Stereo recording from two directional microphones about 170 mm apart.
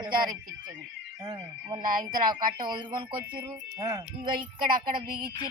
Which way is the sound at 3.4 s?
20° right (ahead or behind).